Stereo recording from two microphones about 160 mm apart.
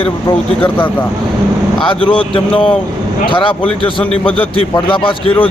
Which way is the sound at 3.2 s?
30° left (ahead or behind).